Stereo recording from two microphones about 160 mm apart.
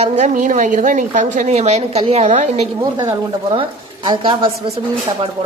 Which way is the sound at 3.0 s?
30° right (ahead or behind).